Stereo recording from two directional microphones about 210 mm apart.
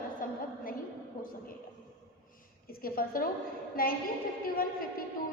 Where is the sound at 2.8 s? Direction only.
45° left (ahead or behind).